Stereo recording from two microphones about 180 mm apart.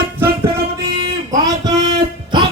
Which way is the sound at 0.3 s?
60° right (ahead or behind).